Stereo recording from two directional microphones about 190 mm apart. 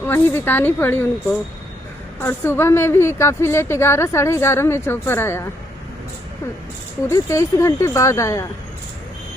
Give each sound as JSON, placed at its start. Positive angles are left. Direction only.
{"t": 0.0, "sound": "a woman's voice", "side_deg": 10}
{"t": 7.1, "sound": "a woman's voice", "side_deg": 15}